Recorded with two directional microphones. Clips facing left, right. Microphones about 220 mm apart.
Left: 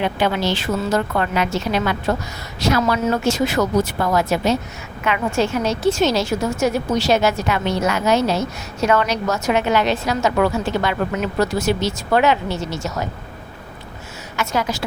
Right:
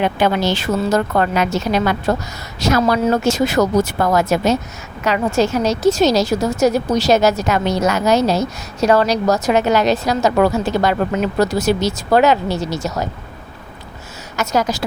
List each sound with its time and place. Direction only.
0.0 s a woman's voice: 45° right (ahead or behind)
14.3 s a woman's voice: 40° right (ahead or behind)